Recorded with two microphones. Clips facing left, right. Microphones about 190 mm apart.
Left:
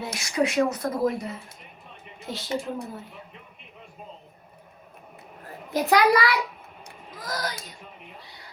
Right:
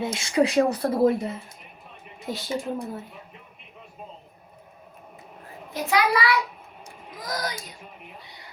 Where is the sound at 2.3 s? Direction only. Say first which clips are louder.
Right 1 dB; centre (ahead or behind).